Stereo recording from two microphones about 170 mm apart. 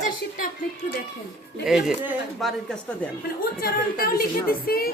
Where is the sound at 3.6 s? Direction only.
60° left (ahead or behind).